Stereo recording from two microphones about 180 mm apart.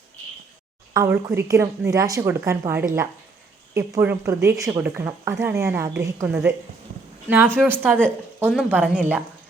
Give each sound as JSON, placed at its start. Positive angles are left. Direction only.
{"t": 0.9, "sound": "a woman's voice", "side_deg": -15}